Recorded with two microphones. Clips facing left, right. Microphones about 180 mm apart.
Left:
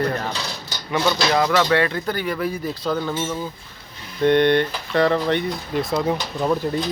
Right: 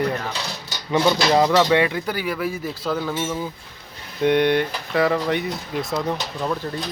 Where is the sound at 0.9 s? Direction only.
25° right (ahead or behind); by 5.8 s 5° right (ahead or behind).